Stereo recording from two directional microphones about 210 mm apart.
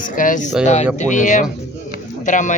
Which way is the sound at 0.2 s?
40° left (ahead or behind).